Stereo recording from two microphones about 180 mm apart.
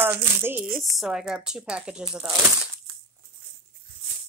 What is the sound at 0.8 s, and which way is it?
Speech, centre (ahead or behind).